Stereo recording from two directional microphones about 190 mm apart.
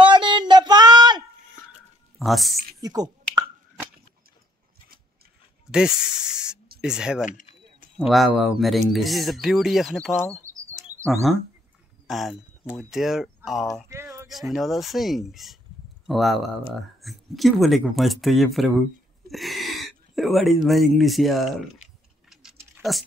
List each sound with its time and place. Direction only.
0.0 s a sound: 25° right (ahead or behind)
2.1 s speech: centre (ahead or behind)
2.8 s speech: 20° right (ahead or behind)
5.7 s snake: 5° right (ahead or behind)
6.8 s speech: 5° right (ahead or behind)
7.2 s speech: 45° left (ahead or behind)
8.0 s speech: 5° right (ahead or behind)
10.4 s bird: 15° right (ahead or behind)
11.3 s speech: centre (ahead or behind)
13.8 s a sound: 15° right (ahead or behind)
14.3 s speech: centre (ahead or behind)
21.8 s tick-tock: 40° left (ahead or behind)
22.3 s typing: 5° right (ahead or behind)